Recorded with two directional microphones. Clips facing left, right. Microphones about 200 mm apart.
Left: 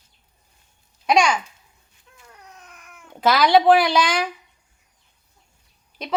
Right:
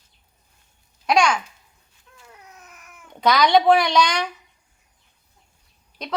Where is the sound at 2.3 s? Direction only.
5° right (ahead or behind).